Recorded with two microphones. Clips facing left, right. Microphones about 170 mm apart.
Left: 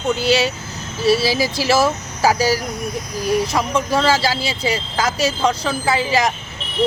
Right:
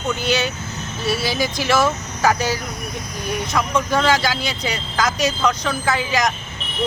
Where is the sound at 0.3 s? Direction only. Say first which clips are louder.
Left 4 dB; 30° left (ahead or behind).